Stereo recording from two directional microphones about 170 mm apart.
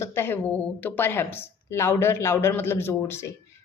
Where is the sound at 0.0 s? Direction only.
15° left (ahead or behind).